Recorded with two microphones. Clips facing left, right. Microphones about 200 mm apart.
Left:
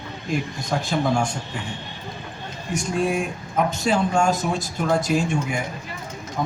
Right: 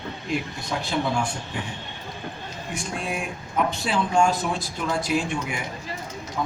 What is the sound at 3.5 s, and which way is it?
A man's voice, 45° left (ahead or behind).